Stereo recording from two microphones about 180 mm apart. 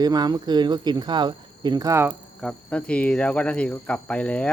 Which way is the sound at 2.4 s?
5° left (ahead or behind).